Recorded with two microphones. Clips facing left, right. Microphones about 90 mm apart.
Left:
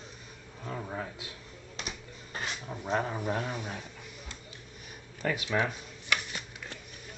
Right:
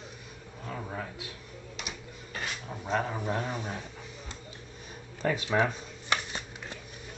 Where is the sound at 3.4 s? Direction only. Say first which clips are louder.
Right 2 dB; 25° right (ahead or behind).